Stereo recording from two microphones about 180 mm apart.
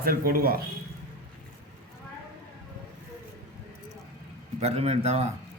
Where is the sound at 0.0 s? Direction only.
55° right (ahead or behind).